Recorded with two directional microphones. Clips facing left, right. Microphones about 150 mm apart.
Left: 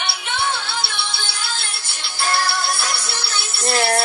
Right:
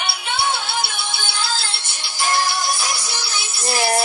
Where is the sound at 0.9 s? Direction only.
45° right (ahead or behind).